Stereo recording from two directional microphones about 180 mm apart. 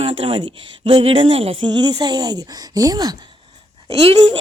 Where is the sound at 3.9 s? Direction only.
30° right (ahead or behind).